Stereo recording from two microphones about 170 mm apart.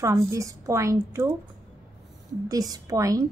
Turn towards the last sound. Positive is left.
turn(degrees=-20)  # may be behind; listen again after turning